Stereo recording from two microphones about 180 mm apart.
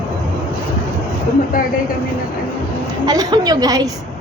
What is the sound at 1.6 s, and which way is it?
Speech, 50° left (ahead or behind).